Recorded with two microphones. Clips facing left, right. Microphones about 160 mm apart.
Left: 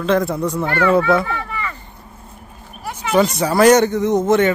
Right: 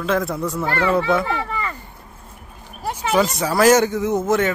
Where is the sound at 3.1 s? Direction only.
Centre (ahead or behind).